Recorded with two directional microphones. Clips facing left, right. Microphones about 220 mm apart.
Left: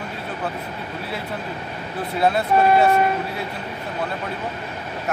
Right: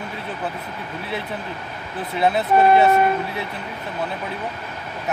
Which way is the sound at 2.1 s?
Centre (ahead or behind).